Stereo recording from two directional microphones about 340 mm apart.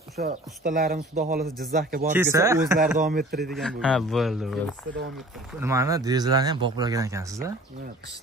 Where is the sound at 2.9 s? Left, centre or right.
Right.